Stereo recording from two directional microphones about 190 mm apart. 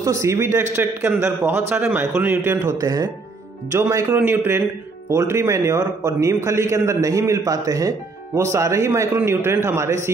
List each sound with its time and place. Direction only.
0.0 s a man's voice: 15° right (ahead or behind)